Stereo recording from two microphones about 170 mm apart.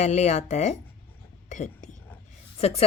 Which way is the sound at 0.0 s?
45° left (ahead or behind).